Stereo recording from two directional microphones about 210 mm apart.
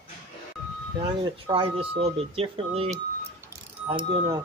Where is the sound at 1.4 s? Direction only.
25° right (ahead or behind).